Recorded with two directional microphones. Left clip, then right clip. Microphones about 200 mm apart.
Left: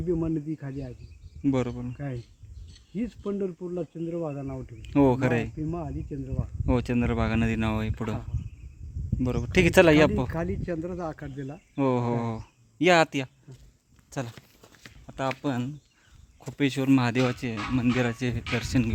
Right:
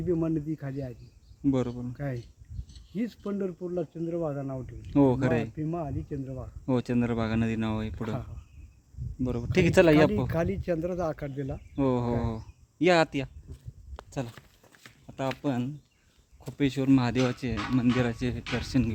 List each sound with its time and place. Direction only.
0.1 s speech: 5° right (ahead or behind)
5.5 s speech: 10° right (ahead or behind)
6.7 s speech: centre (ahead or behind)
9.2 s speech: 10° left (ahead or behind)
10.2 s speech: 40° right (ahead or behind)
11.7 s speech: 5° left (ahead or behind)
14.1 s walk: 5° left (ahead or behind)
15.0 s a sound: centre (ahead or behind)
15.4 s speech: centre (ahead or behind)